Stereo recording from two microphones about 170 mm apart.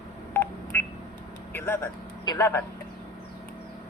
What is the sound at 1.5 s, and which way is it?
Speech, 10° left (ahead or behind).